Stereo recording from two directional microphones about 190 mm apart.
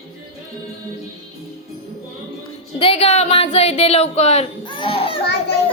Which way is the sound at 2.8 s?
30° left (ahead or behind).